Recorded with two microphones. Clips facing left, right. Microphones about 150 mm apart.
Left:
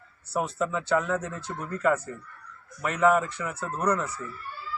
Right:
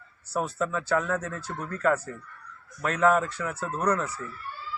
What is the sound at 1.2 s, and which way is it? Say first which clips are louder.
Speech: even; 20° left (ahead or behind).